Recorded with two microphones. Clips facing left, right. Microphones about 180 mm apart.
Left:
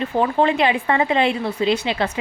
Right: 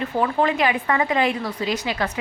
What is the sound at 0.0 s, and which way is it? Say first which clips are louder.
Speech: left 3 dB; 25° left (ahead or behind).